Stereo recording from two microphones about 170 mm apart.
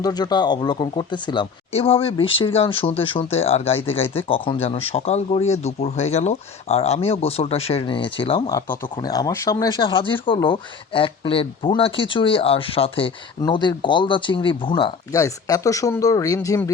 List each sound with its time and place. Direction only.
0.0 s speech: 25° left (ahead or behind)